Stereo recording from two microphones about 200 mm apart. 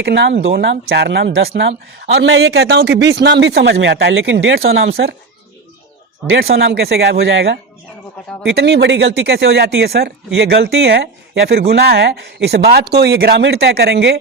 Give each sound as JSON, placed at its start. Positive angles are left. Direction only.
{"t": 0.0, "sound": "speech", "side_deg": -60}
{"t": 6.3, "sound": "speech", "side_deg": -55}